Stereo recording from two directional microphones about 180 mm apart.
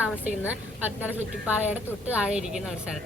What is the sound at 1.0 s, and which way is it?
A woman's voice, 10° right (ahead or behind).